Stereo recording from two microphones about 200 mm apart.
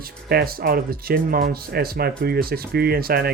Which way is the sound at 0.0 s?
50° right (ahead or behind).